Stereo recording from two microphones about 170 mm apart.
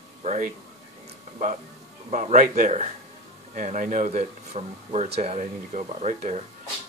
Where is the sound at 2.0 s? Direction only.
45° right (ahead or behind).